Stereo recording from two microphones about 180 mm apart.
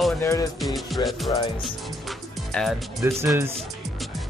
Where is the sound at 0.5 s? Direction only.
Centre (ahead or behind).